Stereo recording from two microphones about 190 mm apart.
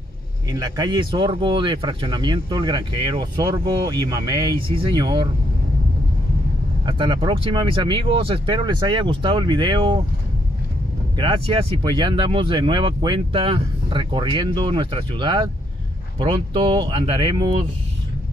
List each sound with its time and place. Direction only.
0.5 s speech: 20° right (ahead or behind)
6.9 s speech: 25° right (ahead or behind)
11.1 s speech: 30° right (ahead or behind)